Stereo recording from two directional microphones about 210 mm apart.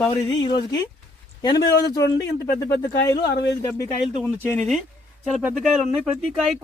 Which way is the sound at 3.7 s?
15° left (ahead or behind).